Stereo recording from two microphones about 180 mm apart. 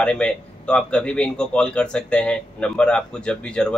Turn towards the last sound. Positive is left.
turn(degrees=5)  # may be behind; listen again after turning